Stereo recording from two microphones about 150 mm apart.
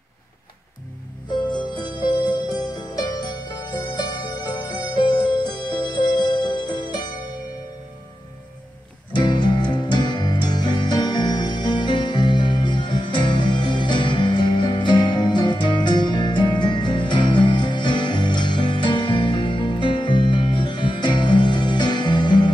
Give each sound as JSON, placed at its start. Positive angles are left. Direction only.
{"t": 1.3, "sound": "music", "side_deg": 30}
{"t": 9.1, "sound": "music", "side_deg": 30}